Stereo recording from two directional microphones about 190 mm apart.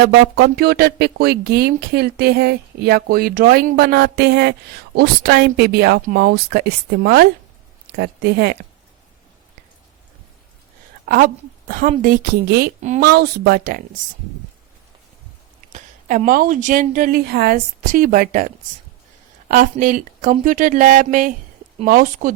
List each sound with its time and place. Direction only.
0.0 s speech: 60° right (ahead or behind)
11.0 s a sound: 50° right (ahead or behind)
11.9 s a woman's voice: 45° right (ahead or behind)
13.1 s speech: 60° right (ahead or behind)
15.7 s a woman's voice: 45° right (ahead or behind)